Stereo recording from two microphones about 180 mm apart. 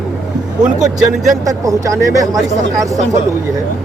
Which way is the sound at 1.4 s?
20° right (ahead or behind).